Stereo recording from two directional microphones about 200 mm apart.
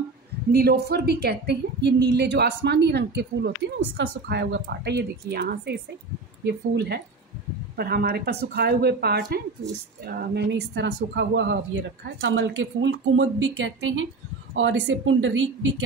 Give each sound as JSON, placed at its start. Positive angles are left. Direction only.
{"t": 0.5, "sound": "speech", "side_deg": -50}